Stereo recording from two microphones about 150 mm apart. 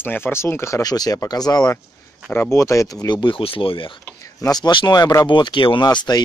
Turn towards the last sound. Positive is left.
turn(degrees=25)  # may be behind; listen again after turning